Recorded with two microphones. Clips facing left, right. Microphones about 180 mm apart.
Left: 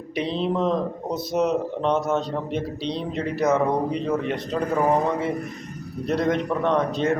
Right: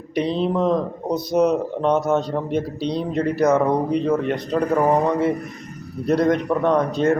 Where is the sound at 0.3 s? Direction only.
Centre (ahead or behind).